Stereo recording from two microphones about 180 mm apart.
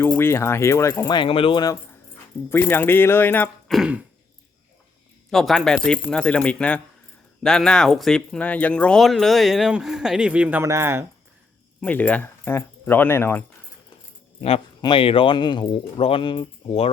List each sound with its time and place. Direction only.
0.0 s speech: 10° left (ahead or behind)
3.8 s speech: 5° right (ahead or behind)
5.3 s speech: centre (ahead or behind); by 11.0 s 15° right (ahead or behind)
11.8 s speech: 10° left (ahead or behind)
14.4 s speech: 30° left (ahead or behind)